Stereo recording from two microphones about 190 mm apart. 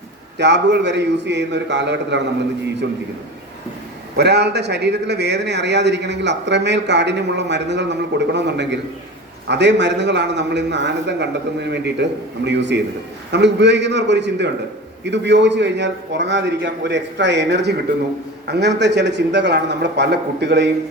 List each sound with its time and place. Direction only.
0.3 s a man's voice: 65° right (ahead or behind)
4.2 s a man's voice: 60° right (ahead or behind)